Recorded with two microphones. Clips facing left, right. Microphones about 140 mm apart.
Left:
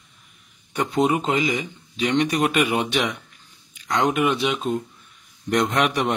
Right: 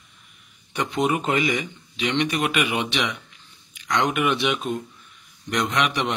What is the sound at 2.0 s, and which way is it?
Speech, 40° left (ahead or behind).